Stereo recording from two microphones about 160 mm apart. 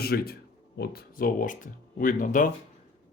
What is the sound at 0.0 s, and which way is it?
Speech, 75° left (ahead or behind).